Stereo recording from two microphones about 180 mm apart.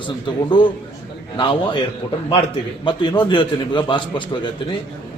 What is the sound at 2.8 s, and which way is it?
A man's voice, 25° left (ahead or behind).